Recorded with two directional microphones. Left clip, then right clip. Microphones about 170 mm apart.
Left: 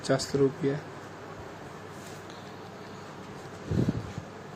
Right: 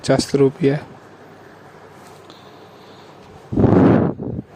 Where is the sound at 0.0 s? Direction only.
45° right (ahead or behind).